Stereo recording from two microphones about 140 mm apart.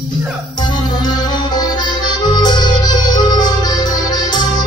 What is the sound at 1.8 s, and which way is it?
Accordion, 30° left (ahead or behind).